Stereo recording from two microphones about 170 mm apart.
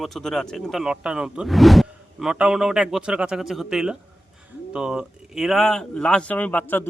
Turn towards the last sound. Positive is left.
turn(degrees=10)  # may be behind; listen again after turning